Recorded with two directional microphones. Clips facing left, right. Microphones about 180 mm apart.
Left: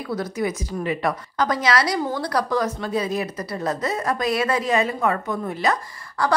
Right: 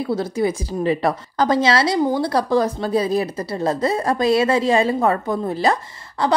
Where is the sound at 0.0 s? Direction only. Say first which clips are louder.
Right 5 dB; 30° right (ahead or behind).